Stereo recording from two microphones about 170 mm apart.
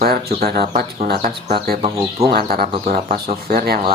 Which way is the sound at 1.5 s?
60° right (ahead or behind).